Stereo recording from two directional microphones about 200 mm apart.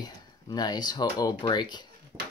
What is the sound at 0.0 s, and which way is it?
Speech, 20° left (ahead or behind).